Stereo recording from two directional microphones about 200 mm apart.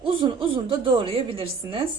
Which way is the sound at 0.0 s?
25° right (ahead or behind).